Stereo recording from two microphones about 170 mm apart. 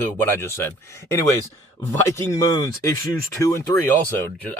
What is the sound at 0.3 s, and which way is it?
Speech, 15° left (ahead or behind).